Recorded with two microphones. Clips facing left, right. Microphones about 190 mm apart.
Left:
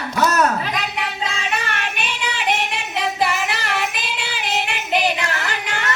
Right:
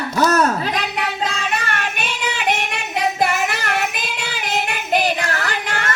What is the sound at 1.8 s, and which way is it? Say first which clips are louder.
Child singing: right 1 dB; 45° right (ahead or behind).